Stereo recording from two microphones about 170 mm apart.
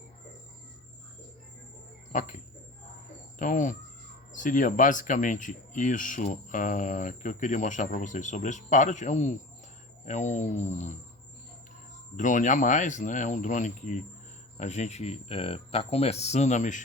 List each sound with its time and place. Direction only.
2.1 s speech: 50° left (ahead or behind)
12.1 s speech: 45° left (ahead or behind)